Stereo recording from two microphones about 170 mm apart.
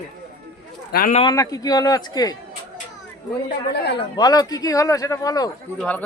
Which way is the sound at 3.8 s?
85° left.